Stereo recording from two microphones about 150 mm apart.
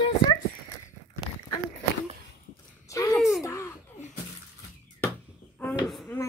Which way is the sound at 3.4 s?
20° left (ahead or behind).